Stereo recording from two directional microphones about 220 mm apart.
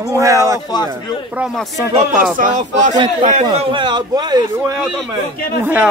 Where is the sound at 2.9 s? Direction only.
20° right (ahead or behind).